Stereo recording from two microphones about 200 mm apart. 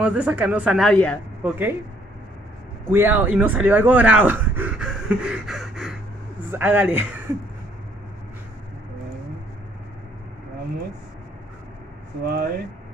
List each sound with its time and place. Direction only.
0.0 s speech: 5° right (ahead or behind)
1.4 s speech: 10° right (ahead or behind)
2.9 s speech: 10° right (ahead or behind)
12.3 s speech: 50° right (ahead or behind)